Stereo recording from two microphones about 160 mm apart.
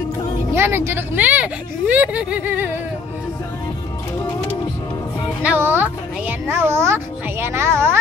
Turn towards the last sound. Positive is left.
turn(degrees=-15)  # may be behind; listen again after turning